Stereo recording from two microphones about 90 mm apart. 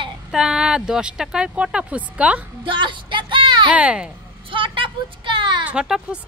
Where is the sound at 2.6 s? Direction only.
65° right (ahead or behind).